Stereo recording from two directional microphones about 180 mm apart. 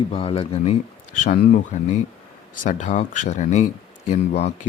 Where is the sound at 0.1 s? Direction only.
35° left (ahead or behind).